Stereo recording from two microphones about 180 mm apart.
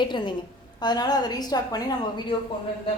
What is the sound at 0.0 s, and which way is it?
A woman's voice, 25° left (ahead or behind).